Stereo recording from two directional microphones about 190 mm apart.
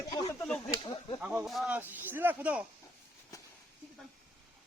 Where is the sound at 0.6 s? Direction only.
20° left (ahead or behind).